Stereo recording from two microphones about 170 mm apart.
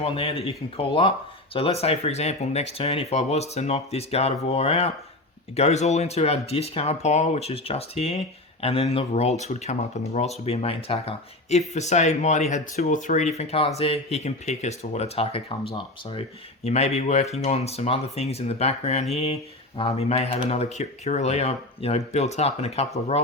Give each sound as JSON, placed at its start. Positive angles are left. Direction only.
{"t": 0.0, "sound": "speech", "side_deg": 35}